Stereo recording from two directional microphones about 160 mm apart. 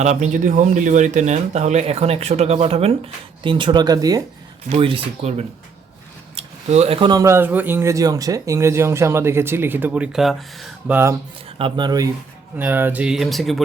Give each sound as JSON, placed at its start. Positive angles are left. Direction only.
{"t": 0.0, "sound": "speech", "side_deg": -45}
{"t": 4.7, "sound": "speech", "side_deg": -35}
{"t": 10.9, "sound": "speech", "side_deg": -15}
{"t": 11.4, "sound": "speech", "side_deg": -35}
{"t": 12.5, "sound": "speech", "side_deg": -10}